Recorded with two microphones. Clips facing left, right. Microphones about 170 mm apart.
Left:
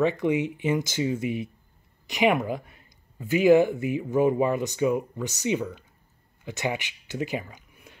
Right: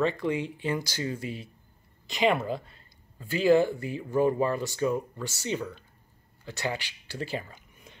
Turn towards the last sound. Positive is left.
turn(degrees=10)  # may be behind; listen again after turning